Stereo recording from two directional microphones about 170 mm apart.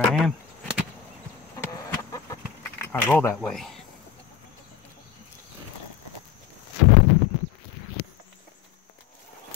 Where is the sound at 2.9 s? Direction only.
10° left (ahead or behind).